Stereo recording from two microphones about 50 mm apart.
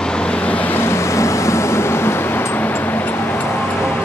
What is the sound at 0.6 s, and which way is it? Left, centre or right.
Vehicle, left.